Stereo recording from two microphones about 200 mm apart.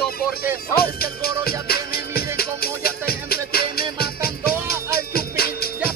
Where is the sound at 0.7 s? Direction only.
50° left (ahead or behind).